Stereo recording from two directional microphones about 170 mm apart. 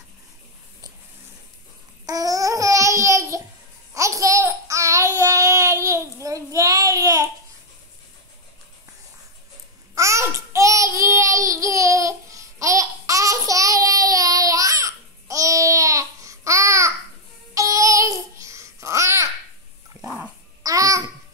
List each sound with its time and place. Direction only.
2.0 s babbling: 20° right (ahead or behind)
6.2 s child singing: 20° right (ahead or behind)
9.9 s babbling: 15° right (ahead or behind)
20.6 s babbling: 20° right (ahead or behind)